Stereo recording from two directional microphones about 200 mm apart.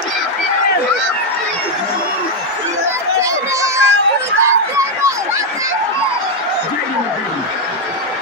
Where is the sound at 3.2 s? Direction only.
15° right (ahead or behind).